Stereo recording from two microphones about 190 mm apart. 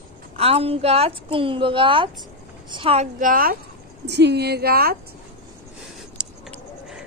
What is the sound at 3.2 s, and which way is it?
Speech, 45° right (ahead or behind).